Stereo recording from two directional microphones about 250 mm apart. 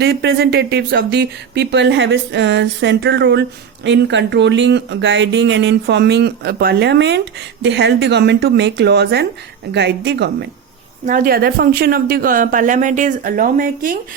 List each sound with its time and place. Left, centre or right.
0.0 s speech: right